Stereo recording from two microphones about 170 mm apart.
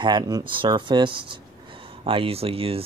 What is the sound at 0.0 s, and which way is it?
Speech, 25° right (ahead or behind).